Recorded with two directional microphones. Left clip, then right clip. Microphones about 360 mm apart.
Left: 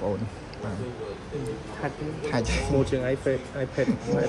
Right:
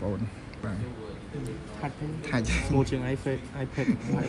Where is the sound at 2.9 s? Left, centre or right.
Centre.